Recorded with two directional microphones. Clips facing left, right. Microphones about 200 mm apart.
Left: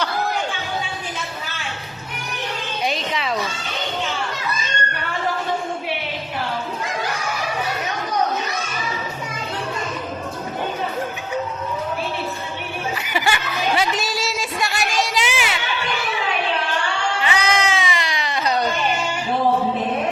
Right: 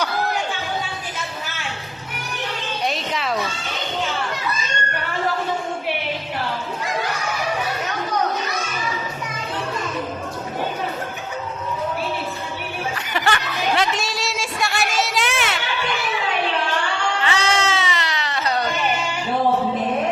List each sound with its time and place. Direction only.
2.8 s cat: centre (ahead or behind)
13.1 s a sound: 10° left (ahead or behind)
17.2 s bleat: 15° left (ahead or behind)